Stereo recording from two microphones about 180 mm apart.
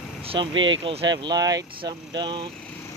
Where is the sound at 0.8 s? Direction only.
25° right (ahead or behind).